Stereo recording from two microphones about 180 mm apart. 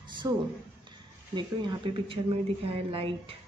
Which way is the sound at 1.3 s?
25° right (ahead or behind).